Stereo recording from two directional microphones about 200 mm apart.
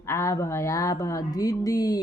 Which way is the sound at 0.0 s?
15° left (ahead or behind).